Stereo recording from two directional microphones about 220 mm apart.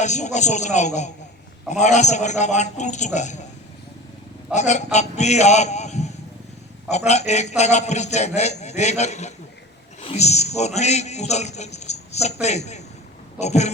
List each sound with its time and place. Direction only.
0.0 s a man's voice: 30° left (ahead or behind)
4.5 s a man's voice: 30° left (ahead or behind)